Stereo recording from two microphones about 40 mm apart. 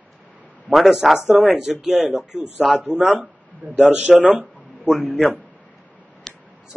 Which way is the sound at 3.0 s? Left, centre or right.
Right.